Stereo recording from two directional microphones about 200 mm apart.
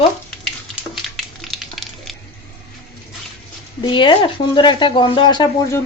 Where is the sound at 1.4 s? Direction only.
Centre (ahead or behind).